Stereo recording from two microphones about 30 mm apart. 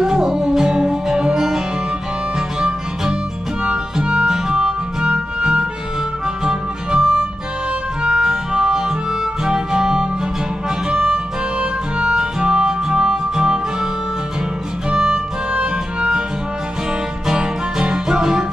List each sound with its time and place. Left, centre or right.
0.0 s music: centre
5.0 s music: right
8.0 s harmonica: right
11.6 s music: right
14.9 s music: right
17.3 s music: right